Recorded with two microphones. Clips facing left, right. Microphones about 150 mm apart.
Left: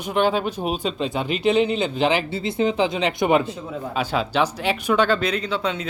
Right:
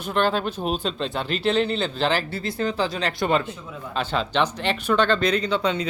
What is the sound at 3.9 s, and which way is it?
Speech, 10° left (ahead or behind).